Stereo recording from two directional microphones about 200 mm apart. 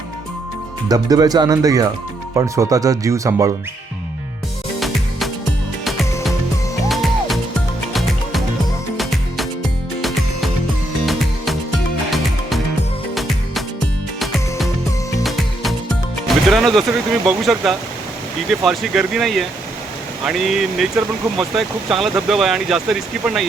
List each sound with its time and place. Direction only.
0.9 s speech: 20° right (ahead or behind)
5.8 s music: centre (ahead or behind)
11.0 s music: centre (ahead or behind)
13.1 s music: centre (ahead or behind)
17.2 s speech: centre (ahead or behind)